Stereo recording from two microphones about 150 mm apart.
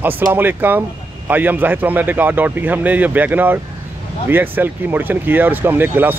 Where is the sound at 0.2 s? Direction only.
15° right (ahead or behind).